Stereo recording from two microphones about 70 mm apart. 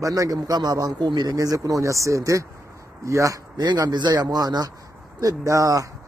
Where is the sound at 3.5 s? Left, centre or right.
Right.